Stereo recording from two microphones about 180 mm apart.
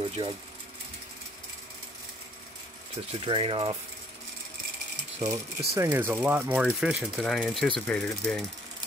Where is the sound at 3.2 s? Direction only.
30° right (ahead or behind).